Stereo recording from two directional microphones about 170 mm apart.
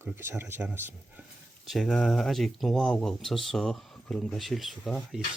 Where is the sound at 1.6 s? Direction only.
Centre (ahead or behind).